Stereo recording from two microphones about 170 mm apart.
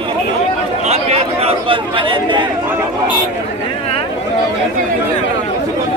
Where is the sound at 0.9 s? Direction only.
35° right (ahead or behind).